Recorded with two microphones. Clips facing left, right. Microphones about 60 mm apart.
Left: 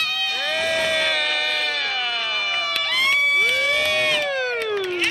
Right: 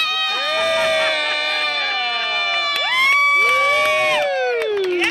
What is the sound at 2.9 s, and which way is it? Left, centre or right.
Crowd, right.